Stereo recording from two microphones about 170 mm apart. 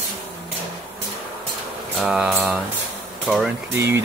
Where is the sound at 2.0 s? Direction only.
5° right (ahead or behind).